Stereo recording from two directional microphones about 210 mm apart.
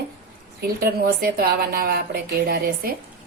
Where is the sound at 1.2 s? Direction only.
45° right (ahead or behind).